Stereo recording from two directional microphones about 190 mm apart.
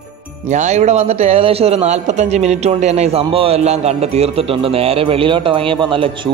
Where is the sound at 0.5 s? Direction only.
35° right (ahead or behind).